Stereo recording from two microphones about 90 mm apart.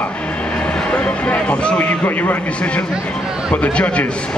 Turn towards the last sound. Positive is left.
turn(degrees=15)  # may be behind; listen again after turning